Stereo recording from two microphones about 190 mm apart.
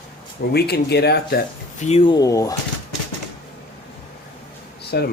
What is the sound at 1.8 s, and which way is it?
Speech, 35° left (ahead or behind).